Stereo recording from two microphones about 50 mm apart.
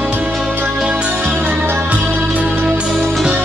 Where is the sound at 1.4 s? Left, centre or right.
Right.